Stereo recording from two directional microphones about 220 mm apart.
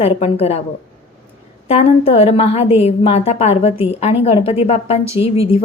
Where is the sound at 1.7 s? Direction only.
30° left (ahead or behind).